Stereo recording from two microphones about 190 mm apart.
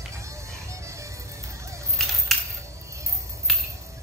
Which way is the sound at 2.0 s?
Centre (ahead or behind).